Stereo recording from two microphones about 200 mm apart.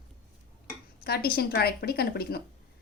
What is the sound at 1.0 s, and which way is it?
Speech, 50° left (ahead or behind).